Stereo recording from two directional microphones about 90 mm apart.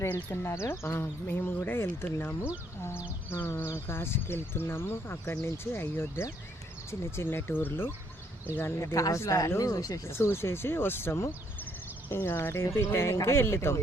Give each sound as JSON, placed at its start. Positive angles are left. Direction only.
{"t": 0.0, "sound": "speech", "side_deg": 30}
{"t": 10.1, "sound": "speech", "side_deg": 25}